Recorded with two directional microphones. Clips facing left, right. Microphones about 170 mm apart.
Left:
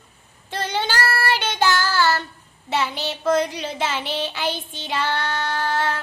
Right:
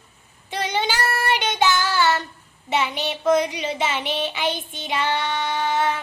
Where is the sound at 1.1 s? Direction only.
20° right (ahead or behind).